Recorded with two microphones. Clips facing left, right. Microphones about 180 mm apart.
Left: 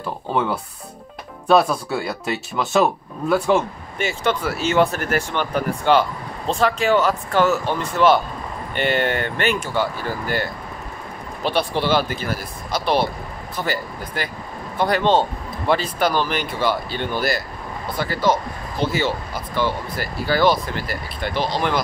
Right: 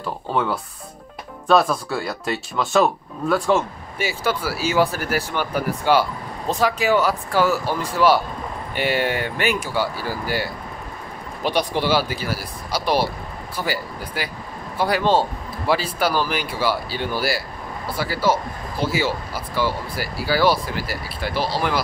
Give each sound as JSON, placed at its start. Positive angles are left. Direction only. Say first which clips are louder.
{"t": 0.0, "sound": "speech", "louder": "left 1 dB", "side_deg": 15}
{"t": 1.5, "sound": "speech", "louder": "left 1 dB", "side_deg": 5}